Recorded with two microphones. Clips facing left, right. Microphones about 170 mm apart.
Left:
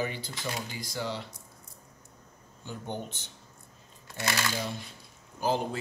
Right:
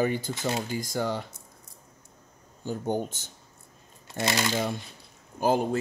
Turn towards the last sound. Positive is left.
turn(degrees=-50)  # may be behind; listen again after turning